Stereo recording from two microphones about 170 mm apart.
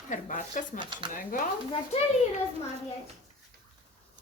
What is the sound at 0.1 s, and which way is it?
Speech, 50° left (ahead or behind).